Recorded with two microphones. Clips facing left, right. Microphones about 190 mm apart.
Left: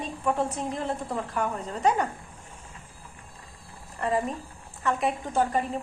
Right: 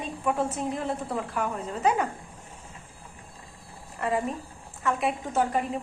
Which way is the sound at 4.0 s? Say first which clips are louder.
Left 1 dB; 5° right (ahead or behind).